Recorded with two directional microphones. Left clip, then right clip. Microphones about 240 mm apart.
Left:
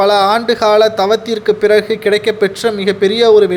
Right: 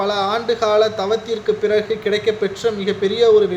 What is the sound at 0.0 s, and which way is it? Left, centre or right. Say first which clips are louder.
Speech: left 9 dB; left.